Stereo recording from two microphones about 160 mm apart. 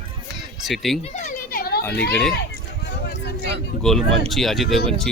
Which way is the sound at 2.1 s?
5° left (ahead or behind).